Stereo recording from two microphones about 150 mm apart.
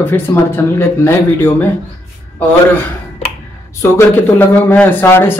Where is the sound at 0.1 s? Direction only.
15° left (ahead or behind).